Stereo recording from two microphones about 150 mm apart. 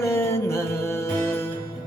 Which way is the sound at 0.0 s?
15° left (ahead or behind).